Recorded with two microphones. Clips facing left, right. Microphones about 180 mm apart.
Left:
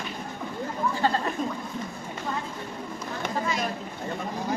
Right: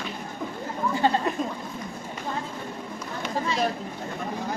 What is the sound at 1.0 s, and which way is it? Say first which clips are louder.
Goat: right 3 dB; 20° right (ahead or behind).